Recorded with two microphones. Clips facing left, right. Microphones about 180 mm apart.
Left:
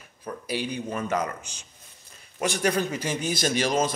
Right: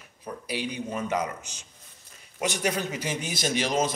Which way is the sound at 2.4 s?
20° right (ahead or behind).